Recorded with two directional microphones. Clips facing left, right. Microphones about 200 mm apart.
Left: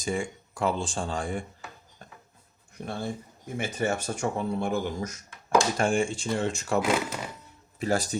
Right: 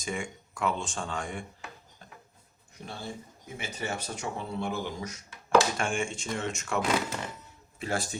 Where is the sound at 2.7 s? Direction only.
55° left (ahead or behind); by 6.8 s 35° left (ahead or behind).